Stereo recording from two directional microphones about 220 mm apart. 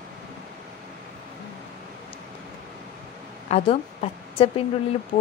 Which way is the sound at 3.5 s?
30° left (ahead or behind).